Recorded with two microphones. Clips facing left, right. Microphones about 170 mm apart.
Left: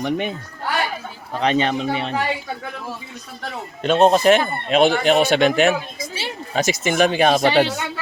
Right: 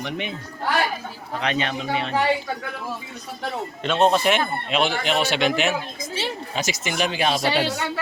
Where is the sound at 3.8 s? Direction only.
40° left (ahead or behind).